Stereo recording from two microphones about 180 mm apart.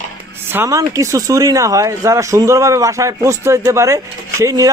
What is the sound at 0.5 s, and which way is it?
Speech, 15° right (ahead or behind).